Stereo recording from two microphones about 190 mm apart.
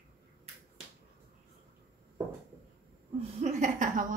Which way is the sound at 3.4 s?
40° right (ahead or behind).